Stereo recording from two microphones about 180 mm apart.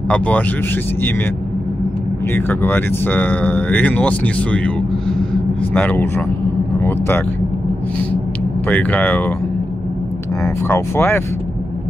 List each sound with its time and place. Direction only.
2.3 s speech: 10° left (ahead or behind)
8.6 s speech: 5° left (ahead or behind)
10.7 s speech: 10° left (ahead or behind)